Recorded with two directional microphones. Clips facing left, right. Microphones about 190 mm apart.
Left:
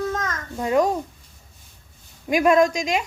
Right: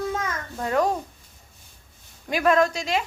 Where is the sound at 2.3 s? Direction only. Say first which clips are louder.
Left 3 dB; 15° left (ahead or behind).